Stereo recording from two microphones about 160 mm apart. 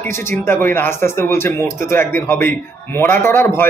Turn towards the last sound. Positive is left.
turn(degrees=15)  # may be behind; listen again after turning